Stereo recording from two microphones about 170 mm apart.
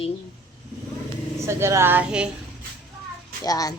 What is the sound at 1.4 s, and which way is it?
Speech, 15° right (ahead or behind).